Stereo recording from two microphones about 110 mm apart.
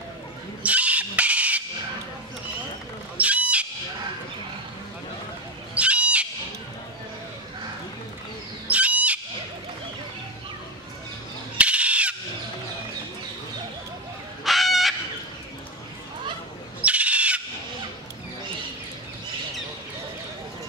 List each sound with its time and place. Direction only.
0.7 s a sound: 10° right (ahead or behind)
3.2 s wild animals: 10° right (ahead or behind)
5.8 s wild animals: 10° right (ahead or behind)
8.6 s a sound: 10° right (ahead or behind)
11.5 s goose: 10° right (ahead or behind)
14.4 s fowl: centre (ahead or behind)
16.8 s owl: 10° right (ahead or behind)